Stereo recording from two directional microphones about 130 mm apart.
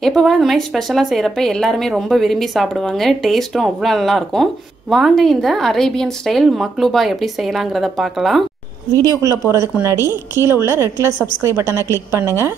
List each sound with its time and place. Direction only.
0.0 s speech: centre (ahead or behind)
9.5 s a woman's voice: 20° right (ahead or behind)